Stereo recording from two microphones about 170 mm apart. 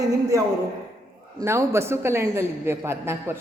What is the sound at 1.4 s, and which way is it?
A man's voice, 15° right (ahead or behind).